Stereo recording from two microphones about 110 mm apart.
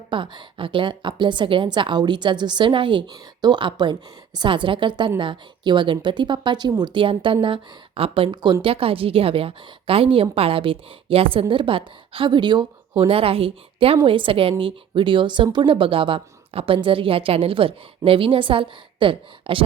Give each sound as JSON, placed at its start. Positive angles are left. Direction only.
{"t": 0.1, "sound": "a woman's voice", "side_deg": -50}
{"t": 8.6, "sound": "a woman's voice", "side_deg": -60}